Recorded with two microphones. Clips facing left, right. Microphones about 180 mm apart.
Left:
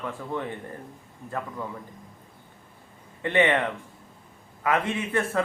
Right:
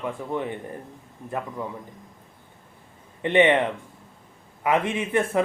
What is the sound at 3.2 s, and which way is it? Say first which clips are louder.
A man's voice: right 4 dB; 20° right (ahead or behind).